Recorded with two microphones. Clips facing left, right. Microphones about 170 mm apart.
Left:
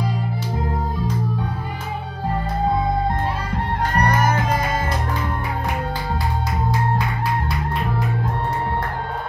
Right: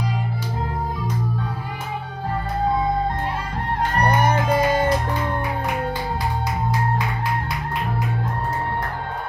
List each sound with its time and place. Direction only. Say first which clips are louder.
4.0 s music: right 1 dB; 30° right (ahead or behind)